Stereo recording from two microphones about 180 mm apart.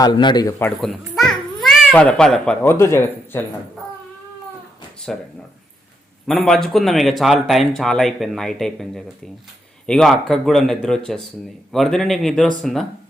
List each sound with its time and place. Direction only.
0.0 s a man's voice: 25° left (ahead or behind)
0.8 s a child's voice: centre (ahead or behind)
5.1 s speech: 5° left (ahead or behind)